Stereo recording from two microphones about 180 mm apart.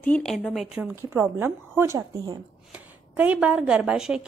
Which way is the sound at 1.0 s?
15° right (ahead or behind).